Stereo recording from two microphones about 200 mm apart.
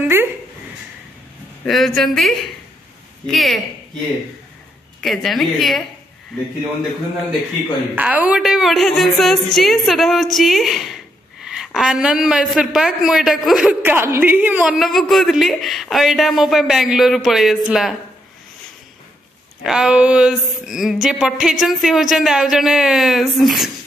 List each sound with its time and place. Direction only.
0.0 s a sound: 10° right (ahead or behind)
1.7 s a man's voice: centre (ahead or behind)
5.0 s a man's voice: centre (ahead or behind)
7.9 s a man's voice: 10° right (ahead or behind)
19.6 s a man's voice: 5° right (ahead or behind)